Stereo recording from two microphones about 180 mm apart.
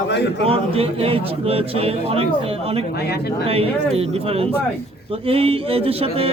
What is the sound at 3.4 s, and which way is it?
Speech, 35° right (ahead or behind).